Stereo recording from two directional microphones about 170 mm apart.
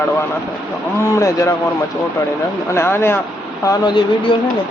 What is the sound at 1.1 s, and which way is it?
Speech, 20° left (ahead or behind).